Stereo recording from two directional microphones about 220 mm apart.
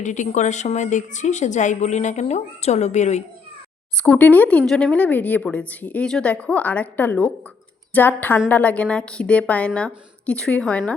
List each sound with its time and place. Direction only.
0.0 s a woman's voice: 35° left (ahead or behind)
3.9 s a woman's voice: 5° left (ahead or behind)